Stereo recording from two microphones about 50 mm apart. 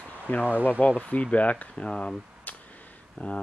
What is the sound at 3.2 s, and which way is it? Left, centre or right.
Speech, left.